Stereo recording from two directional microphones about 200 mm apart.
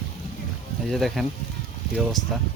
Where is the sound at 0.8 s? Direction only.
Centre (ahead or behind).